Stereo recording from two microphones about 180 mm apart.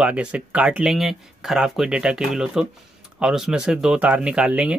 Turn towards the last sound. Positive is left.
turn(degrees=-5)  # may be behind; listen again after turning